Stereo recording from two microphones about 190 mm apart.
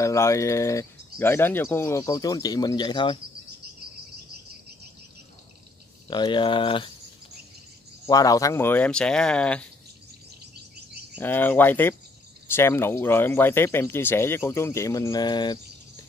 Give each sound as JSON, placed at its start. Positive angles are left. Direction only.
{"t": 0.0, "sound": "speech", "side_deg": 15}
{"t": 6.0, "sound": "speech", "side_deg": 25}
{"t": 8.1, "sound": "speech", "side_deg": 20}
{"t": 11.1, "sound": "speech", "side_deg": 10}